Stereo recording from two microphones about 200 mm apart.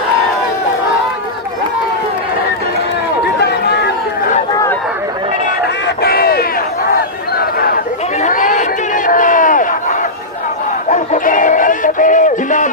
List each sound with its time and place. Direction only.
4.5 s chatter: 15° left (ahead or behind)
6.0 s crowd: 50° left (ahead or behind)
6.9 s a sound: 50° left (ahead or behind)
8.2 s chatter: 40° left (ahead or behind)
9.0 s crowd: 40° left (ahead or behind)
10.8 s a sound: 40° left (ahead or behind)